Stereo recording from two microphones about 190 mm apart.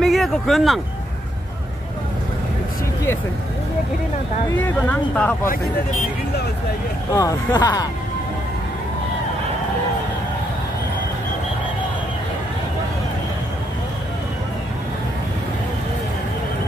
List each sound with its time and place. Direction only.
0.0 s speech: centre (ahead or behind)
4.6 s speech: 10° left (ahead or behind)
7.1 s speech: 20° left (ahead or behind)